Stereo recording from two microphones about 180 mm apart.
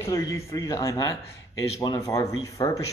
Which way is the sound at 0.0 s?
15° left (ahead or behind).